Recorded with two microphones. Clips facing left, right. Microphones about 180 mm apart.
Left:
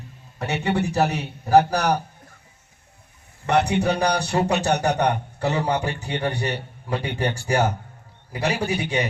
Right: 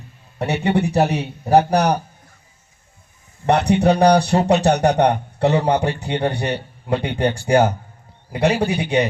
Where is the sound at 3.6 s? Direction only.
35° right (ahead or behind).